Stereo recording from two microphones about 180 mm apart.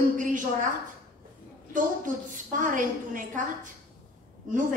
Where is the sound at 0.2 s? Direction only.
45° right (ahead or behind).